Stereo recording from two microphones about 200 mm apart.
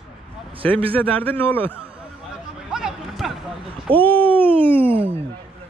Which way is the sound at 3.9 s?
5° left (ahead or behind).